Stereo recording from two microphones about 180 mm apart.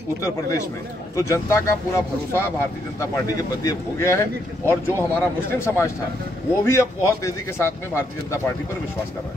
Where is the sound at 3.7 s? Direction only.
15° left (ahead or behind).